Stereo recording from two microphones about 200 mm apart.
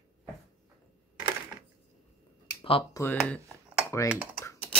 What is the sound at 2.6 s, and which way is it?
Speech, 25° left (ahead or behind).